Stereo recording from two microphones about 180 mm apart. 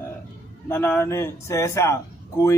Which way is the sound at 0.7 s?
15° left (ahead or behind).